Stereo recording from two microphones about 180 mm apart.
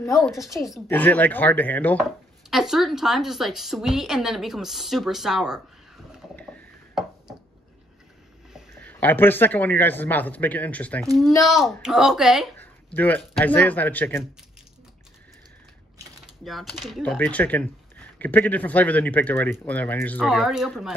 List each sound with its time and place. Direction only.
0.0 s speech: 15° left (ahead or behind)
2.5 s a woman's voice: centre (ahead or behind)
8.8 s a woman's voice: 10° left (ahead or behind)
12.5 s speech: 10° left (ahead or behind)
16.4 s speech: centre (ahead or behind)
20.2 s a woman's voice: centre (ahead or behind)